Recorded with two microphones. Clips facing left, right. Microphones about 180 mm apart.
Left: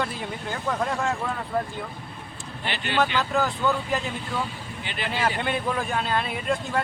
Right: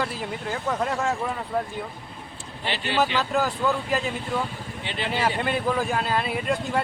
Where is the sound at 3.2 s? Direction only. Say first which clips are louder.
Even; 5° right (ahead or behind).